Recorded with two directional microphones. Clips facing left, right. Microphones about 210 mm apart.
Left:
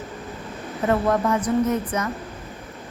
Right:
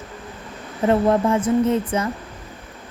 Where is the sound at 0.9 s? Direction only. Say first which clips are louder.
Right 3 dB; 25° right (ahead or behind).